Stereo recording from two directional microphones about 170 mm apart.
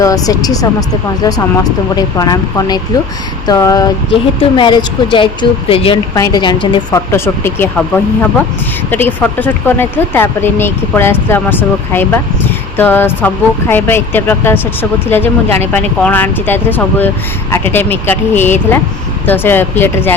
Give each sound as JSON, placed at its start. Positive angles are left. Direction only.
{"t": 0.0, "sound": "speech", "side_deg": 20}
{"t": 6.1, "sound": "speech", "side_deg": 20}
{"t": 7.1, "sound": "speech", "side_deg": 15}